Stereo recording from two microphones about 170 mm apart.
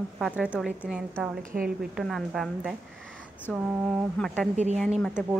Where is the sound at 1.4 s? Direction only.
50° right (ahead or behind).